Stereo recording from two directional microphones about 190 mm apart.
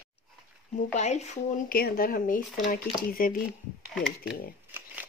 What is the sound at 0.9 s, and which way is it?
Speech, 35° left (ahead or behind).